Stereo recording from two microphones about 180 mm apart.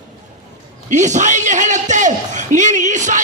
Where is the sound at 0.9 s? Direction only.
40° right (ahead or behind).